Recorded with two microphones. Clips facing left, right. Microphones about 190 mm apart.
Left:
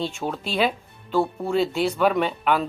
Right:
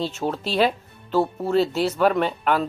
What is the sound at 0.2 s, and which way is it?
Speech, 10° right (ahead or behind).